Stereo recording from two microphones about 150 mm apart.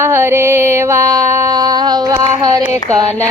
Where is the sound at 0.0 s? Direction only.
15° right (ahead or behind).